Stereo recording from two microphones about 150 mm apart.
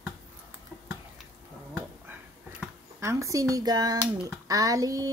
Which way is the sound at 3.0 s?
20° right (ahead or behind).